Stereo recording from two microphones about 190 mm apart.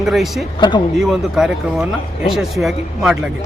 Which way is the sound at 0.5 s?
25° left (ahead or behind).